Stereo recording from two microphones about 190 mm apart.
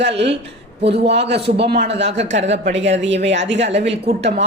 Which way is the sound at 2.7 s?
70° right (ahead or behind).